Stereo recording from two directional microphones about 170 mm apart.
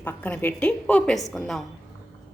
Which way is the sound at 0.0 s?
10° left (ahead or behind).